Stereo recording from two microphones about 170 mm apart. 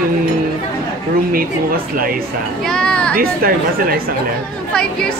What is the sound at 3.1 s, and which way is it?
Speech, 60° right (ahead or behind).